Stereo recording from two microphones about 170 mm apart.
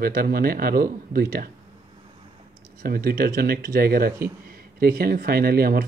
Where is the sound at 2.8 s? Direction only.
60° right (ahead or behind).